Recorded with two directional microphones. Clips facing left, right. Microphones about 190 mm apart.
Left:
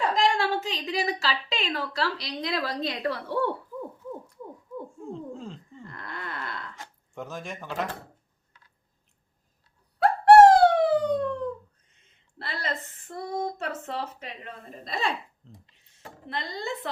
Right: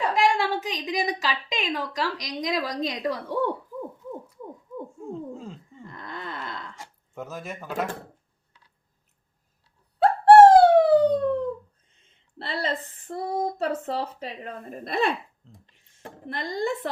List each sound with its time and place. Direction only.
0.1 s a woman's voice: 15° right (ahead or behind)
4.9 s a sound: centre (ahead or behind)
5.8 s a sound: 20° right (ahead or behind)
7.1 s speech: centre (ahead or behind)
10.0 s a sound: 30° right (ahead or behind)
12.4 s speech: 30° right (ahead or behind)
14.7 s speech: 55° right (ahead or behind)
15.4 s speech: centre (ahead or behind)
16.2 s speech: 50° right (ahead or behind)